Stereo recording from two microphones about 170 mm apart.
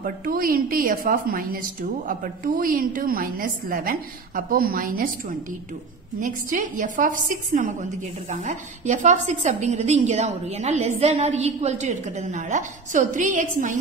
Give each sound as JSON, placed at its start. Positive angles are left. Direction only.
{"t": 0.0, "sound": "a woman's voice", "side_deg": -55}
{"t": 6.2, "sound": "a woman's voice", "side_deg": -50}